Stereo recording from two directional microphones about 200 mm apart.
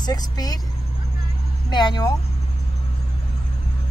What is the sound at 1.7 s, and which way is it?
Speech, 20° left (ahead or behind).